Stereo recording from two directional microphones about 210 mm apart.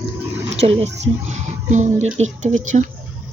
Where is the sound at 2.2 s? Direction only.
35° right (ahead or behind).